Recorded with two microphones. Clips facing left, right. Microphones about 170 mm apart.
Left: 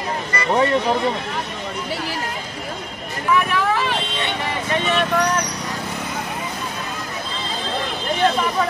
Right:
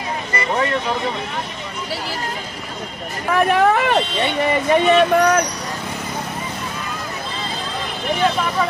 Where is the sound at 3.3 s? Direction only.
55° right (ahead or behind).